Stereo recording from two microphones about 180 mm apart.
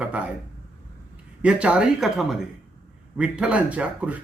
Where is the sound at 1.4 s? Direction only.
5° right (ahead or behind).